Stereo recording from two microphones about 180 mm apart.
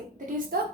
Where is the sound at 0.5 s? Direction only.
55° right (ahead or behind).